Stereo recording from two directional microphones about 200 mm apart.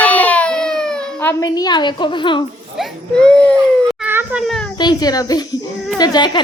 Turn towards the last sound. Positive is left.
turn(degrees=20)  # may be behind; listen again after turning